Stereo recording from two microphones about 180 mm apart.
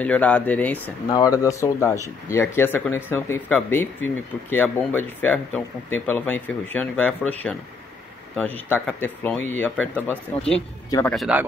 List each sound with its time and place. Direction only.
0.0 s speech: 5° left (ahead or behind)
1.1 s speech: 20° left (ahead or behind); by 11.4 s 5° right (ahead or behind)